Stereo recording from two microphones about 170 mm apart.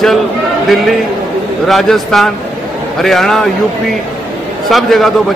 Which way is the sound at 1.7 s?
Centre (ahead or behind).